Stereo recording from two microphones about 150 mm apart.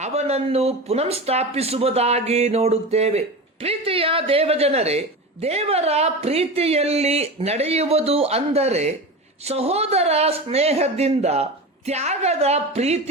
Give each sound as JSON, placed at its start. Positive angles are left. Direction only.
{"t": 0.0, "sound": "speech", "side_deg": -45}